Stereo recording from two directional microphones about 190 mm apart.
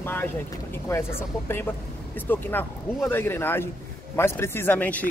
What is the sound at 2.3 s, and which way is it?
Speech, 10° left (ahead or behind).